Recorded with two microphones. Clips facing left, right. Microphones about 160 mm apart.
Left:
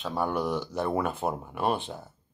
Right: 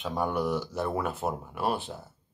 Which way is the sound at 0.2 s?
10° right (ahead or behind).